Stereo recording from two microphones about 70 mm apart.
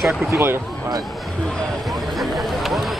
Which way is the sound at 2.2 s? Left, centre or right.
Centre.